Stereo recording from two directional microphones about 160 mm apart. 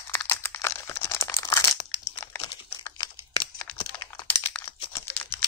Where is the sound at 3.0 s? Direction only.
25° left (ahead or behind).